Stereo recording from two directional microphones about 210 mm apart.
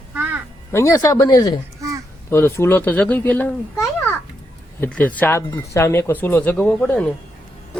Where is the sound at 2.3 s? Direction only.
10° left (ahead or behind).